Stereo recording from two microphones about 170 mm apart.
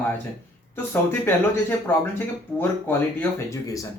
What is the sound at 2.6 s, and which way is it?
Speech, 10° left (ahead or behind).